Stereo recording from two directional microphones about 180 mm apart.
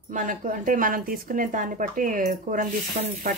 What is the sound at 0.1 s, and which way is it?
Speech, 45° right (ahead or behind).